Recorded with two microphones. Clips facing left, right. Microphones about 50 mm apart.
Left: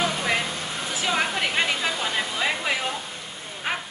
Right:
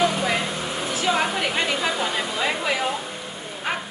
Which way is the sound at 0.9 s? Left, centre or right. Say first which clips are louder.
Right 2 dB; centre.